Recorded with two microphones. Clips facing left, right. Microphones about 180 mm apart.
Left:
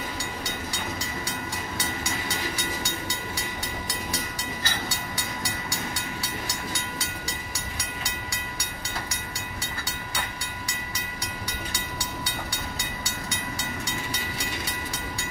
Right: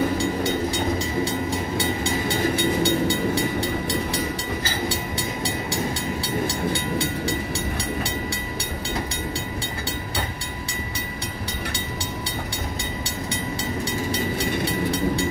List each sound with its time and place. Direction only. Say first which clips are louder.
2.5 s train: right 12 dB; 60° right (ahead or behind)